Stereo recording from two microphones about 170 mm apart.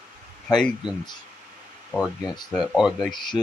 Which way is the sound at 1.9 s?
10° right (ahead or behind).